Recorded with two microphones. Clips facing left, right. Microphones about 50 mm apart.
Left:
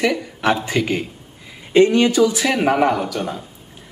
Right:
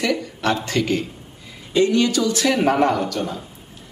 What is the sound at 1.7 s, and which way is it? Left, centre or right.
Speech, left.